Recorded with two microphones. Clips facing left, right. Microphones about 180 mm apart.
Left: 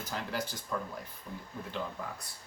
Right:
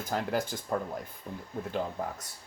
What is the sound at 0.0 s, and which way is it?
Speech, 50° right (ahead or behind).